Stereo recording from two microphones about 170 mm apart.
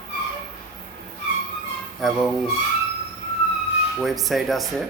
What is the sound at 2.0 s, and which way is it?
Speech, centre (ahead or behind).